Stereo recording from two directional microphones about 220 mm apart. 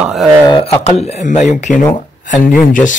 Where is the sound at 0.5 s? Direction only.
20° left (ahead or behind).